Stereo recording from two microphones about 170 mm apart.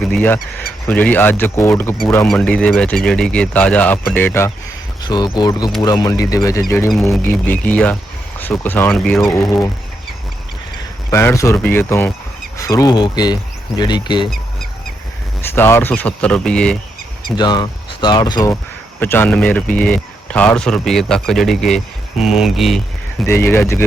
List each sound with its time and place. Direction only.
0.1 s speech: 10° left (ahead or behind)
5.0 s speech: 25° left (ahead or behind); by 9.3 s 5° left (ahead or behind)
11.1 s speech: 15° left (ahead or behind)
15.4 s speech: 15° left (ahead or behind)
17.3 s speech: 25° left (ahead or behind)
18.9 s a man's voice: 10° left (ahead or behind)
23.2 s speech: 15° left (ahead or behind)